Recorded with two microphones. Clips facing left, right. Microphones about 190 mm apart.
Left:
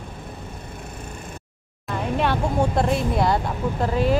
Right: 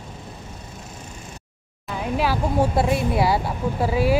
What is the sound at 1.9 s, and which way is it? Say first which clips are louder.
Speech: even; 5° right (ahead or behind).